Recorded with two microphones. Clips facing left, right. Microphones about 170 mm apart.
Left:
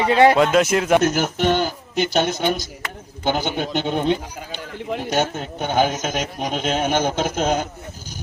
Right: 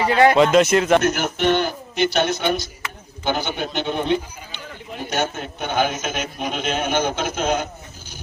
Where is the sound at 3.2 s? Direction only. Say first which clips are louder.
Left 2 dB; 50° left (ahead or behind).